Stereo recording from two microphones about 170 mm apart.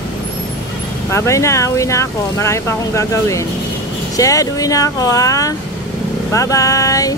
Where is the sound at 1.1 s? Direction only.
15° left (ahead or behind).